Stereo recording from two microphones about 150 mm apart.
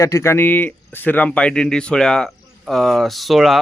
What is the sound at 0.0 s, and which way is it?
Speech, 20° left (ahead or behind).